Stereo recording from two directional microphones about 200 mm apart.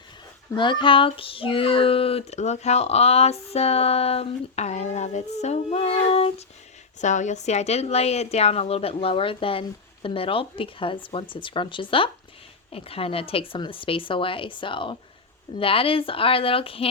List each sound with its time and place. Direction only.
0.5 s female singing: 25° left (ahead or behind)
7.0 s a woman's voice: 35° left (ahead or behind)